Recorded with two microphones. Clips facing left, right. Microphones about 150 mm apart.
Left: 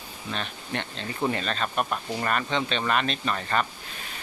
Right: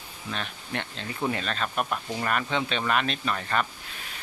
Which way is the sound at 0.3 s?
Centre (ahead or behind).